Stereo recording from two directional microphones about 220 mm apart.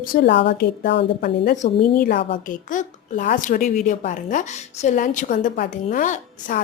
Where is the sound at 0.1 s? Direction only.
50° left (ahead or behind).